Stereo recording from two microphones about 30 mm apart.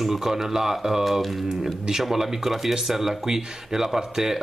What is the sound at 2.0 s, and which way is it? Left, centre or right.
Speech, centre.